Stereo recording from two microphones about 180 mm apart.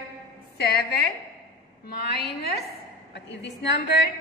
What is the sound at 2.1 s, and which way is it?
Speech, 60° left (ahead or behind).